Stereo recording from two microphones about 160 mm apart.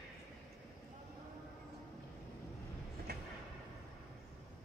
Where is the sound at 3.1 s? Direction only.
90° right.